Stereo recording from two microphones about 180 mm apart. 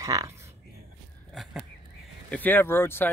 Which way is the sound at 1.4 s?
Centre (ahead or behind).